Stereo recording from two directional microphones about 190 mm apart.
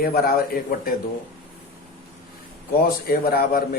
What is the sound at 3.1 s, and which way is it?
Speech, 50° left (ahead or behind).